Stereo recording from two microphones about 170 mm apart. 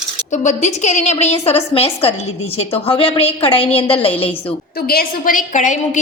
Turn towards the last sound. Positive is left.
turn(degrees=45)  # may be behind; listen again after turning